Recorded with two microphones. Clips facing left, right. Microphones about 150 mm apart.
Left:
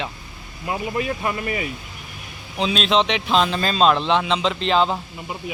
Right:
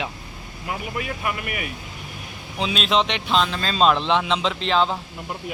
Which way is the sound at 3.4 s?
10° left (ahead or behind).